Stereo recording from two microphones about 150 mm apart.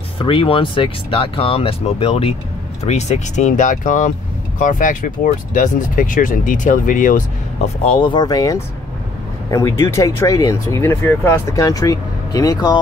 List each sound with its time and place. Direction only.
0.2 s speech: 35° left (ahead or behind); by 7.2 s 60° left (ahead or behind)
7.8 s speech: 35° left (ahead or behind)